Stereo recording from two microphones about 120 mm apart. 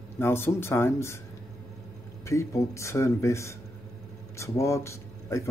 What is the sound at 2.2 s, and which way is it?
Speech, 25° left (ahead or behind).